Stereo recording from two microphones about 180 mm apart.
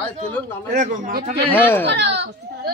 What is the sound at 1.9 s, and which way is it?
Speech, 75° right (ahead or behind).